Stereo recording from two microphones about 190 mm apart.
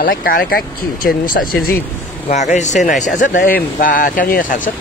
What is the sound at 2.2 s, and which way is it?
Speech, 35° left (ahead or behind).